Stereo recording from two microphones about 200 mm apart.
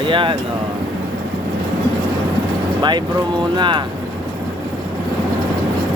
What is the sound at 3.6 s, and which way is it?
Speech, 25° right (ahead or behind).